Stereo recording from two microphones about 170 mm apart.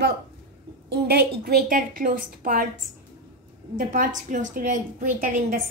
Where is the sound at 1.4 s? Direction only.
60° right (ahead or behind).